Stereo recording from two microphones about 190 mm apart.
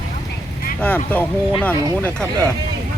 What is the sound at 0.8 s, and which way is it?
Speech, 10° left (ahead or behind).